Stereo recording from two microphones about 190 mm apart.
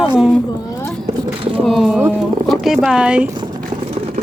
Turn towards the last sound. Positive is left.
turn(degrees=-5)  # may be behind; listen again after turning